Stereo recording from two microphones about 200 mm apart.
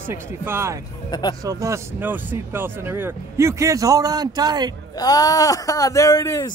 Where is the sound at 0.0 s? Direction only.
10° right (ahead or behind).